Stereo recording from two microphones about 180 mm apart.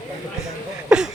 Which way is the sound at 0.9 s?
5° right (ahead or behind).